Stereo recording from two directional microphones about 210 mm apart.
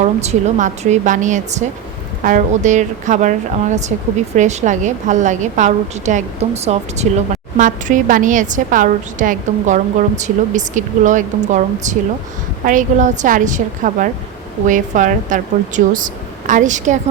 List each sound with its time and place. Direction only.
0.0 s a woman's voice: 30° right (ahead or behind)